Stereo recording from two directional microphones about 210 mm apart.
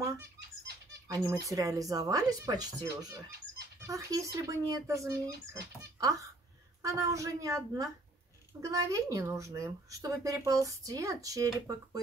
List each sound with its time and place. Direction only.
1.0 s speech: 15° right (ahead or behind)